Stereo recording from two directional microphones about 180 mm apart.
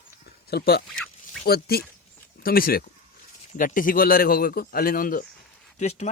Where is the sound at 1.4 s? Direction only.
60° left (ahead or behind).